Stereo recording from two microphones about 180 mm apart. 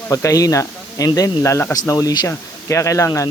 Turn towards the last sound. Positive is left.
turn(degrees=15)  # may be behind; listen again after turning